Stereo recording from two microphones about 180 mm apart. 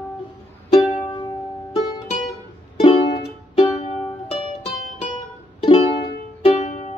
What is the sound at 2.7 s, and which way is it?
Music, 30° left (ahead or behind).